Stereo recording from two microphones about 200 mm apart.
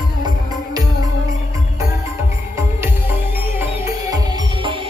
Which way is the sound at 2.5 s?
10° right (ahead or behind).